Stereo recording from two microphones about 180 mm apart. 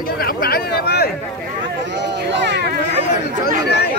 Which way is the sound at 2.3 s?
70° right (ahead or behind).